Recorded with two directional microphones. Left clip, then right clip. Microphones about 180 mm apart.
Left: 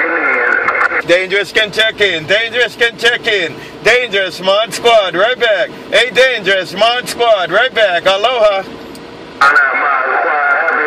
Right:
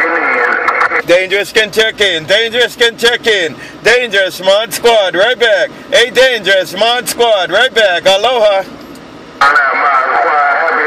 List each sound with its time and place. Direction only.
0.0 s radio: 40° right (ahead or behind)
1.0 s speech: 25° right (ahead or behind)
9.4 s music: 40° right (ahead or behind)